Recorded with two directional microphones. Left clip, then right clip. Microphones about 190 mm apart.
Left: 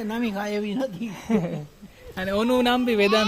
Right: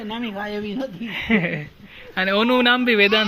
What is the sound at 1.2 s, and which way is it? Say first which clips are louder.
Speech: right 5 dB; 5° right (ahead or behind).